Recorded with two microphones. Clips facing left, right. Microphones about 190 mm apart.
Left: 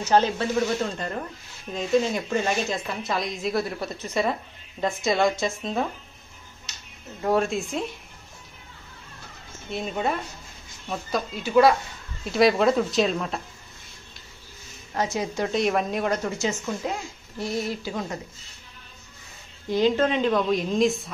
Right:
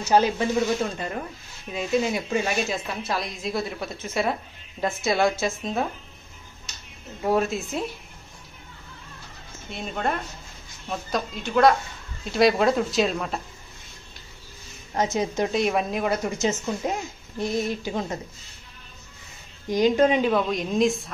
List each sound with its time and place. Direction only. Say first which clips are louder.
0.0 s speech: right 1 dB; 10° right (ahead or behind)
1.7 s speech: left 1 dB; 10° right (ahead or behind)
7.2 s speech: even; 5° right (ahead or behind)
9.7 s speech: left 1 dB; centre (ahead or behind)
15.0 s a woman's voice: right 2 dB; 20° right (ahead or behind)
15.5 s speech: even; centre (ahead or behind)
16.3 s a woman's voice: right 2 dB; 20° right (ahead or behind)
19.7 s speech: right 2 dB; 15° right (ahead or behind)